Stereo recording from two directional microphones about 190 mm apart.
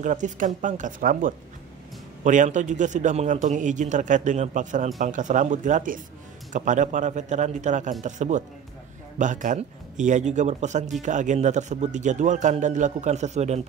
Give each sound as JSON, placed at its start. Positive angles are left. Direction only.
{"t": 0.0, "sound": "a man's voice", "side_deg": -40}